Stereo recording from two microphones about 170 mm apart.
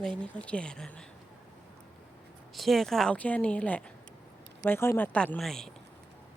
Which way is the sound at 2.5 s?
Centre (ahead or behind).